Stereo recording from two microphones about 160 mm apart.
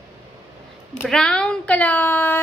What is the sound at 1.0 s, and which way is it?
Speech, 5° left (ahead or behind).